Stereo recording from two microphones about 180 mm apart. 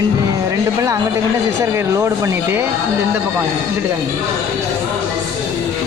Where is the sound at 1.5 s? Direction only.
15° right (ahead or behind).